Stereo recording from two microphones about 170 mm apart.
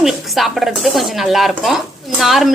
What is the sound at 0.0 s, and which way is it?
Speech, centre (ahead or behind).